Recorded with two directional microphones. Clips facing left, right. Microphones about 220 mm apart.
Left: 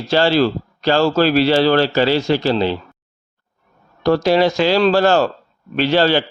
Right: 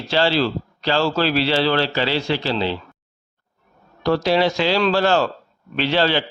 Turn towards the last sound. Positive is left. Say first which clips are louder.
# left 4 dB
turn(degrees=45)  # may be behind; listen again after turning